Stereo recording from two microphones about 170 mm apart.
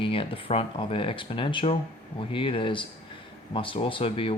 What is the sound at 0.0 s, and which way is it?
Speech, 30° left (ahead or behind).